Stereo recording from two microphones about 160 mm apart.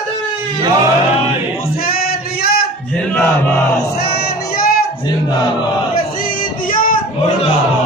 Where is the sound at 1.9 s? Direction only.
70° left (ahead or behind).